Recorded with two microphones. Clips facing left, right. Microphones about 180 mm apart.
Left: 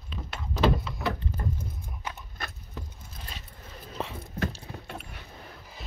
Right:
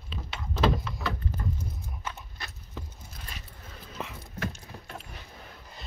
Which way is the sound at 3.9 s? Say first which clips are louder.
Left 4 dB; 35° left (ahead or behind).